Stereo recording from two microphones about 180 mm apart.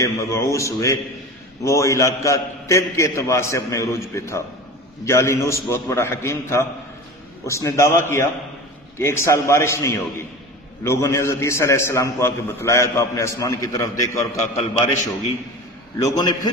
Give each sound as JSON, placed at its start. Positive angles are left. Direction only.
{"t": 0.0, "sound": "a man's voice", "side_deg": 15}
{"t": 16.0, "sound": "a man's voice", "side_deg": 20}